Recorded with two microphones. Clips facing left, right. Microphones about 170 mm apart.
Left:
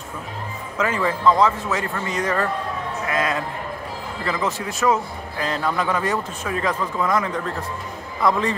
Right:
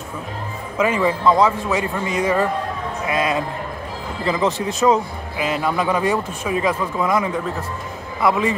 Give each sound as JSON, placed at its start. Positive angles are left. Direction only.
{"t": 0.7, "sound": "a man's voice", "side_deg": -15}